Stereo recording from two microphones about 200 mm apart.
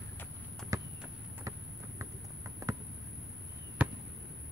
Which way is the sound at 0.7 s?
15° right (ahead or behind).